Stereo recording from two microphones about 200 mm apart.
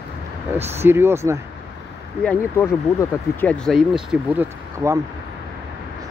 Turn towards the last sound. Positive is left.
turn(degrees=-10)  # may be behind; listen again after turning